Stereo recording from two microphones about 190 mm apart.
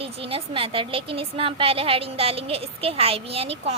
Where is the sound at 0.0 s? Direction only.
30° right (ahead or behind).